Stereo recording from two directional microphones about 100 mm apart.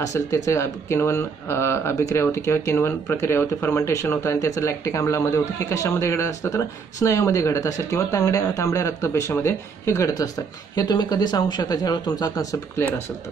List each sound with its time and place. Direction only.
0.0 s speech: 30° left (ahead or behind)